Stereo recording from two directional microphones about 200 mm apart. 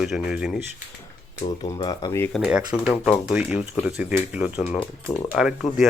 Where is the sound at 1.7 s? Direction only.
20° left (ahead or behind).